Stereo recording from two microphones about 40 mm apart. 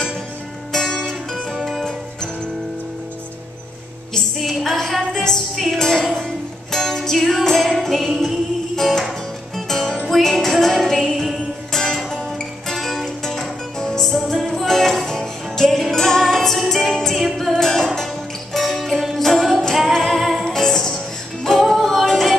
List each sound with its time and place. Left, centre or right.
0.7 s music: centre
1.3 s music: centre
4.4 s a sound: centre
5.1 s music: centre
14.1 s music: centre
17.1 s music: centre
17.5 s music: centre
18.5 s music: centre
19.9 s singing: centre
20.3 s music: centre